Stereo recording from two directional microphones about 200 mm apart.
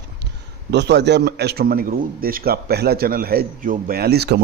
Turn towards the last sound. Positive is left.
turn(degrees=-55)  # may be behind; listen again after turning